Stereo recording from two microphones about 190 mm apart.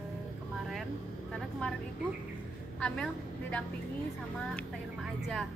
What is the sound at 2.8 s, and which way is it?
Speech, 5° left (ahead or behind).